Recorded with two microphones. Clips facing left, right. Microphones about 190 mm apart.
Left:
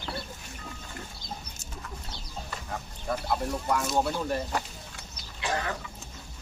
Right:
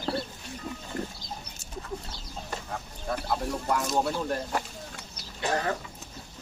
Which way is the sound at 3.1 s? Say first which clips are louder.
Left 1 dB; centre (ahead or behind).